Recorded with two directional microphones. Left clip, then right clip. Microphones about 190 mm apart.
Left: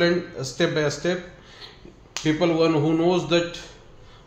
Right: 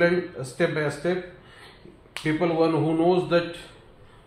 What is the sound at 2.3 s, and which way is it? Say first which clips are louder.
A man's voice: left 2 dB; 25° left (ahead or behind).